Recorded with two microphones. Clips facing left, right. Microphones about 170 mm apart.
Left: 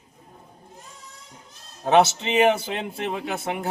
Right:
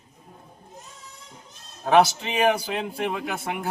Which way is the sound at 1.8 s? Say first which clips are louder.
Even; 25° left (ahead or behind).